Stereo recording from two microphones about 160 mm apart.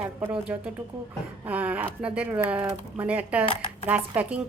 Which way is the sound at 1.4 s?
10° right (ahead or behind).